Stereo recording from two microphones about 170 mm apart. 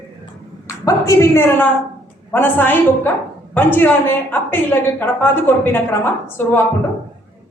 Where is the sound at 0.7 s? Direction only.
20° left (ahead or behind).